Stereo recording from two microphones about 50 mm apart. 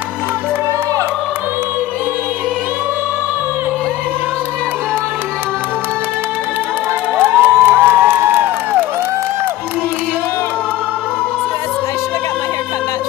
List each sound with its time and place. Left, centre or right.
7.2 s crowd: right